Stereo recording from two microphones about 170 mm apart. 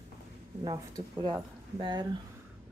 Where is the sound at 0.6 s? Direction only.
25° right (ahead or behind).